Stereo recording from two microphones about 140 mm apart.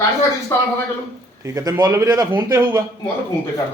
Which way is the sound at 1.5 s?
25° right (ahead or behind).